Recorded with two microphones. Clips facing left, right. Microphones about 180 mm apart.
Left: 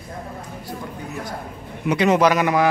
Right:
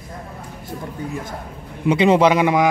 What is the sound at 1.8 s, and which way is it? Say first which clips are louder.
Speech: right 3 dB; 25° right (ahead or behind).